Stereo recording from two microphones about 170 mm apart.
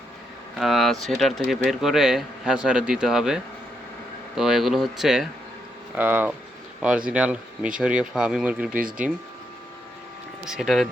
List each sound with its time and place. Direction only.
0.6 s speech: centre (ahead or behind)
10.4 s speech: centre (ahead or behind)